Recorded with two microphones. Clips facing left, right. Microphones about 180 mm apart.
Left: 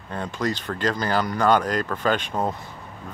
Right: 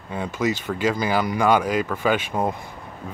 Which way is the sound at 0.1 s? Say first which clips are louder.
Right 2 dB; 10° right (ahead or behind).